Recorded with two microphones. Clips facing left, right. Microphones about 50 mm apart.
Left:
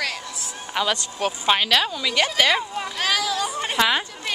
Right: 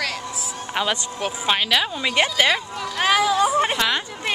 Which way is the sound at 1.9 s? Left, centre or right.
Right.